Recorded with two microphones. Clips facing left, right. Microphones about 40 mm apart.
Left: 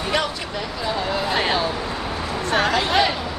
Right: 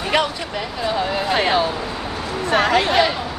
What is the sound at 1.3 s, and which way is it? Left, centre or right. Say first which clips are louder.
A woman's voice: right 4 dB; centre.